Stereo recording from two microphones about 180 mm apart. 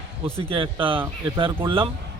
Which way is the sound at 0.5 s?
30° right (ahead or behind).